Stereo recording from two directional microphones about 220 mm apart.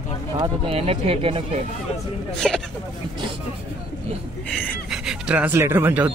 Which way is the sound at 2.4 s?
Centre (ahead or behind).